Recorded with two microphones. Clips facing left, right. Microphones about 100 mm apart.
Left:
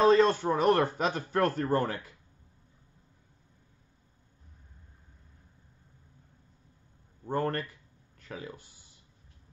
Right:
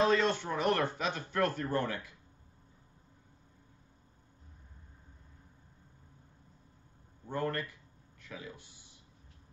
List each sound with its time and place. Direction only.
0.0 s speech: 40° left (ahead or behind)
7.2 s speech: 45° left (ahead or behind)